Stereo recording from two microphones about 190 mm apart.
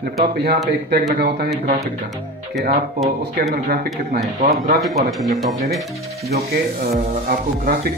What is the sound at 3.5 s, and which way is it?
Speech, 55° right (ahead or behind).